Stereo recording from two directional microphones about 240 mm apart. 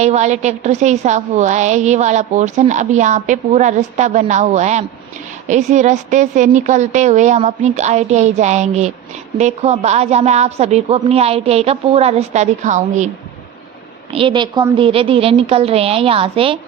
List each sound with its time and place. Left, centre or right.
0.0 s a woman's voice: right
14.1 s a woman's voice: right